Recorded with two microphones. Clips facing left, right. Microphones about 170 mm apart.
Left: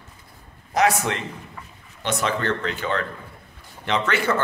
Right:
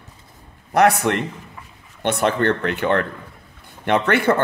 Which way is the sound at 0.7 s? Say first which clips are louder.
Right 5 dB; 60° right (ahead or behind).